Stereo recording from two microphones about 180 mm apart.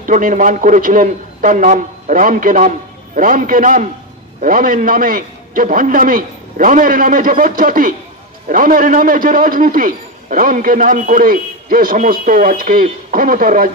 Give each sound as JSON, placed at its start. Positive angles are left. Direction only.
{"t": 0.0, "sound": "a man's voice", "side_deg": -45}